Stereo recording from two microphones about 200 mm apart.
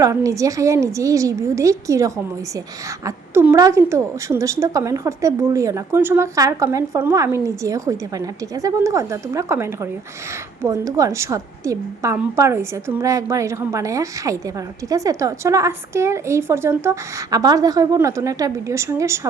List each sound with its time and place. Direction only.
0.0 s a woman's voice: 15° right (ahead or behind)
3.3 s a woman's voice: 15° right (ahead or behind)